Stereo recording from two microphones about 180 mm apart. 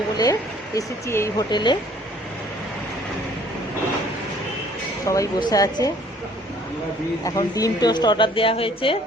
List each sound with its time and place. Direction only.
0.2 s a woman's voice: 20° left (ahead or behind)
5.0 s a woman's voice: 20° left (ahead or behind)
7.3 s a woman's voice: 20° left (ahead or behind)